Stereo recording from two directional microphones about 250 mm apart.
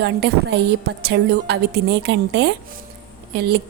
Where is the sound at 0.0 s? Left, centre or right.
Right.